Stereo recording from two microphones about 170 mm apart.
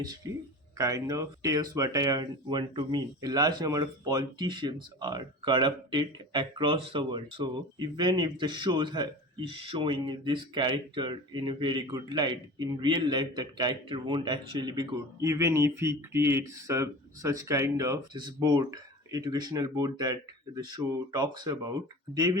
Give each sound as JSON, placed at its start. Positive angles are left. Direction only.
{"t": 0.2, "sound": "speech", "side_deg": -20}